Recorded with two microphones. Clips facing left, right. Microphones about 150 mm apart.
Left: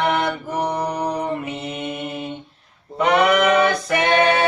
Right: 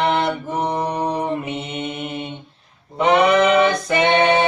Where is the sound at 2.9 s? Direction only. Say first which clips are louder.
Right 2 dB; 20° right (ahead or behind).